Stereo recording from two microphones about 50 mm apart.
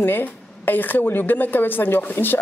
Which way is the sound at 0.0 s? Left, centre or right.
Left.